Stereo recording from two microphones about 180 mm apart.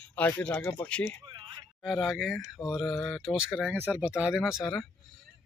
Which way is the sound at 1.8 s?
Centre (ahead or behind).